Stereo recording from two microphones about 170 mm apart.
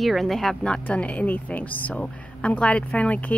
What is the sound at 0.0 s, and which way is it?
A woman's voice, centre (ahead or behind).